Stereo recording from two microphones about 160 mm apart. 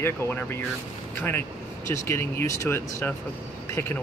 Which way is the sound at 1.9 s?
15° left (ahead or behind).